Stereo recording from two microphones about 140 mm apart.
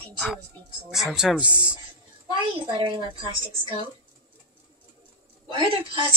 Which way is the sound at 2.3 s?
35° right (ahead or behind).